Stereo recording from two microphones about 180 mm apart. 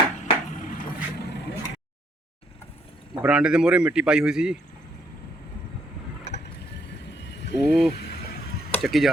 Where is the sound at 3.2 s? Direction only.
5° right (ahead or behind).